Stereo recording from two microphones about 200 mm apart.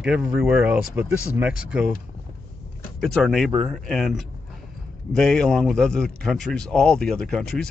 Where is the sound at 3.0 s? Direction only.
Centre (ahead or behind).